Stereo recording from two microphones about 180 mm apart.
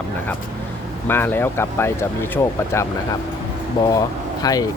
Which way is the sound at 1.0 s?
10° left (ahead or behind).